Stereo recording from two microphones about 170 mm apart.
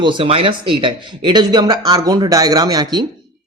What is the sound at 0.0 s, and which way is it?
Speech, 30° right (ahead or behind).